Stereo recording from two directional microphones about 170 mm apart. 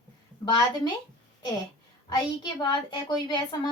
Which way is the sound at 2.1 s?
25° left (ahead or behind).